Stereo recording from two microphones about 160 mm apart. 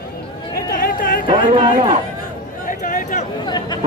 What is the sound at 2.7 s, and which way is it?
Chatter, 55° left (ahead or behind).